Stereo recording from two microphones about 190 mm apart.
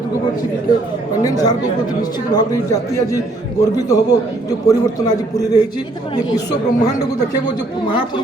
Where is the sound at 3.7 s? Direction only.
20° left (ahead or behind).